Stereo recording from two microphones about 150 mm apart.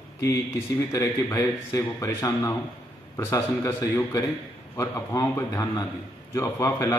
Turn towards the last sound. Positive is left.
turn(degrees=20)  # may be behind; listen again after turning